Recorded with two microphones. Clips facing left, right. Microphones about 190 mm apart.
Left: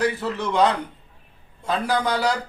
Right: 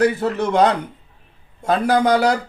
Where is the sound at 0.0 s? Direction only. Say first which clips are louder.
Right 6 dB; 45° right (ahead or behind).